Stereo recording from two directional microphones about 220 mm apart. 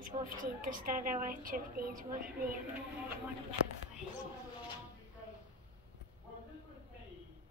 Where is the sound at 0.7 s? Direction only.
40° right (ahead or behind).